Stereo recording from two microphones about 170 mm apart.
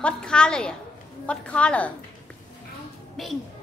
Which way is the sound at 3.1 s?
Centre (ahead or behind).